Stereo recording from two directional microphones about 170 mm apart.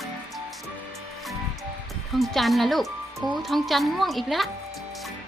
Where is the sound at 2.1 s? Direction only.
Centre (ahead or behind).